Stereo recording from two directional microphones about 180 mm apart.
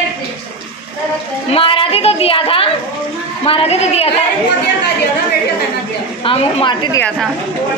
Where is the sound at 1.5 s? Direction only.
30° left (ahead or behind).